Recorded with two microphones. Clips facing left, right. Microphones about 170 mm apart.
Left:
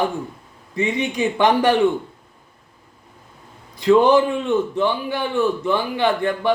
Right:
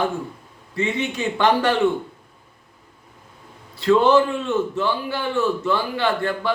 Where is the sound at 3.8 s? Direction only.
15° left (ahead or behind).